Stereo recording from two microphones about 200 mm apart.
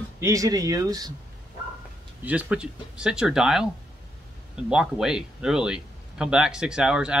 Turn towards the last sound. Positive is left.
turn(degrees=-5)  # may be behind; listen again after turning